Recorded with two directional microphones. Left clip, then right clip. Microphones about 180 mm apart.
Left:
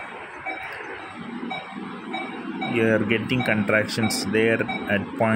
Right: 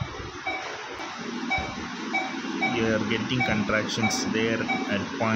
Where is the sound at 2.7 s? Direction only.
20° left (ahead or behind).